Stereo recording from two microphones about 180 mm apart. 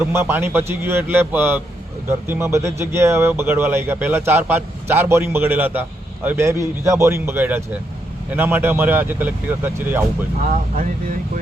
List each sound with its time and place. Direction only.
0.0 s speech: 15° right (ahead or behind)
10.5 s speech: 45° right (ahead or behind)